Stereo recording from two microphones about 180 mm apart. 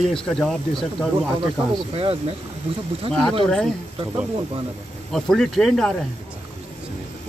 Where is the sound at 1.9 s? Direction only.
30° right (ahead or behind).